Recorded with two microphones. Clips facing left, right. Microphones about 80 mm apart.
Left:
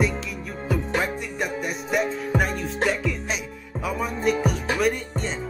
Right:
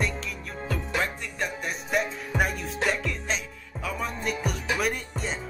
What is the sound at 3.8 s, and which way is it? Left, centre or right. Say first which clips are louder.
Music: left 4 dB; centre.